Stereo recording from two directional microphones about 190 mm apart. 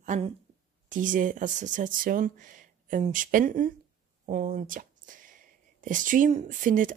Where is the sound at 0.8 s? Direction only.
45° right (ahead or behind).